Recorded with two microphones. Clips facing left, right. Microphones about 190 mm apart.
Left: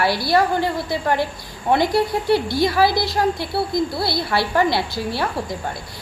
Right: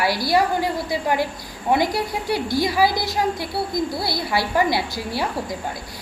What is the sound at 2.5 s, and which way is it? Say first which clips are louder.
Speech: left 2 dB; 15° right (ahead or behind).